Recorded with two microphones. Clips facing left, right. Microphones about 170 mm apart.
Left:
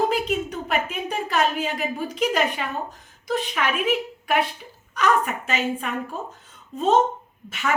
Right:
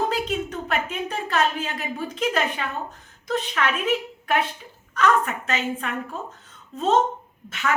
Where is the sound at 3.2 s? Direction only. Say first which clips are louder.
Even; 10° left (ahead or behind).